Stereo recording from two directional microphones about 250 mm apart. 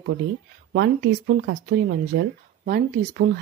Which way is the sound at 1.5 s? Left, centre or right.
Right.